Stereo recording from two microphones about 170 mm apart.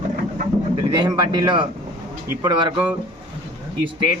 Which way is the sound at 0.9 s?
25° right (ahead or behind).